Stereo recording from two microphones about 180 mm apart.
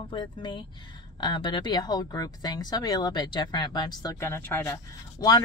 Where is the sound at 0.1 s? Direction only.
25° left (ahead or behind).